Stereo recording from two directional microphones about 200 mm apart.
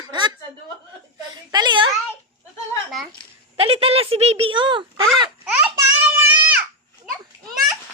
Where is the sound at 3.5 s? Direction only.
30° right (ahead or behind).